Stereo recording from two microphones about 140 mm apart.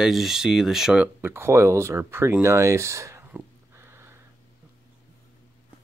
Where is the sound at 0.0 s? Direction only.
Centre (ahead or behind); by 3.3 s 20° right (ahead or behind).